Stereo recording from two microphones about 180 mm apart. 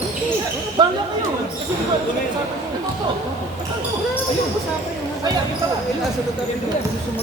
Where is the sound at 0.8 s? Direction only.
25° right (ahead or behind).